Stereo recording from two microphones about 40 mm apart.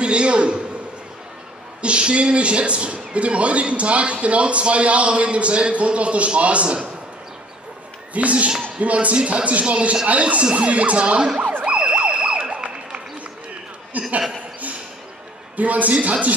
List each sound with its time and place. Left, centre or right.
0.0 s a man's voice: right
1.8 s a man's voice: right
8.1 s speech: right
11.6 s emergency vehicle: right
13.9 s chuckle: right
15.5 s speech: right